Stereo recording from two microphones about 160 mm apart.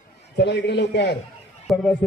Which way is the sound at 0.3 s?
90° left.